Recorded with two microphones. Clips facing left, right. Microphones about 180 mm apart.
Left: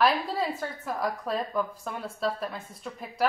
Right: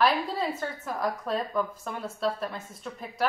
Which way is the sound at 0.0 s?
Centre (ahead or behind).